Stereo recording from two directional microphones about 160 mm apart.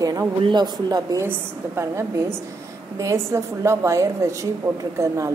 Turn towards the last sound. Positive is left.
turn(degrees=-20)  # may be behind; listen again after turning